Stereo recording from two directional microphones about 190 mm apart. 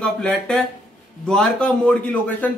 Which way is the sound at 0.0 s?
5° left (ahead or behind).